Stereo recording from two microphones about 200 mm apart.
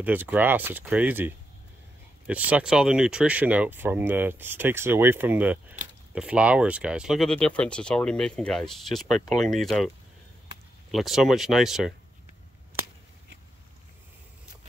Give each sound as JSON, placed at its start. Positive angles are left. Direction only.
{"t": 0.0, "sound": "speech", "side_deg": -10}
{"t": 10.9, "sound": "speech", "side_deg": 0}